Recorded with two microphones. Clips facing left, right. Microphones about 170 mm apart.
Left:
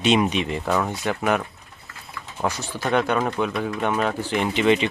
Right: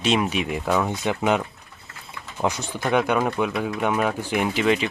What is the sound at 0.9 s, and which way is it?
Speech, 20° right (ahead or behind).